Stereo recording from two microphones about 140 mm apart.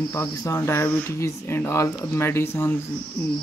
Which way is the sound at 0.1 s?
20° left (ahead or behind).